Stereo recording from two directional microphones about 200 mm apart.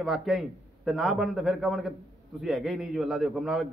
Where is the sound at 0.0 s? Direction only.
Centre (ahead or behind).